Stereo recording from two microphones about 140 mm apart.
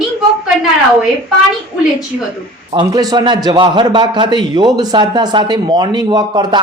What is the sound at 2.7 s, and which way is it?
A man's voice, 35° right (ahead or behind).